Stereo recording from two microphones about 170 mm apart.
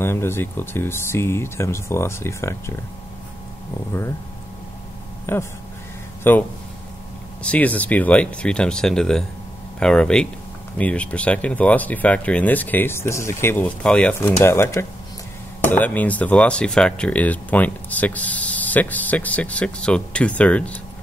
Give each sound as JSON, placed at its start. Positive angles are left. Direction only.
{"t": 0.0, "sound": "speech", "side_deg": 15}
{"t": 5.2, "sound": "speech", "side_deg": 15}
{"t": 7.4, "sound": "speech", "side_deg": 10}